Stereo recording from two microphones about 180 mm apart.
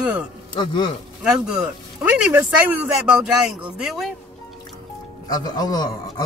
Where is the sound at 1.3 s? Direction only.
5° right (ahead or behind).